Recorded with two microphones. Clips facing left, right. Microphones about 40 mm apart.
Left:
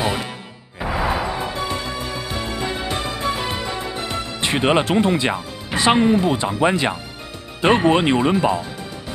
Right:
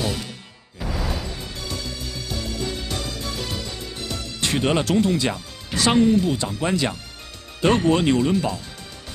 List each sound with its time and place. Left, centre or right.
0.0 s music: left
7.6 s speech: left